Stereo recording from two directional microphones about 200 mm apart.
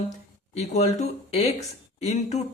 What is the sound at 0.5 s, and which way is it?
Speech, 35° left (ahead or behind).